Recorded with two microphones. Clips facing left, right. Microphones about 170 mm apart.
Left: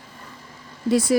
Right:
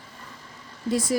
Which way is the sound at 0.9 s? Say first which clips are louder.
Left 6 dB; 75° left (ahead or behind).